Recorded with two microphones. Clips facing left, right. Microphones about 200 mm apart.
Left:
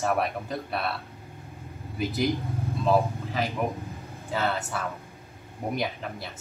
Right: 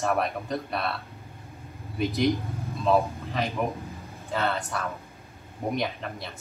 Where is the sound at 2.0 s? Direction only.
Centre (ahead or behind).